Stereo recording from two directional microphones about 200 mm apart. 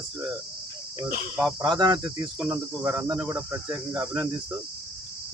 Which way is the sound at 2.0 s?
15° right (ahead or behind).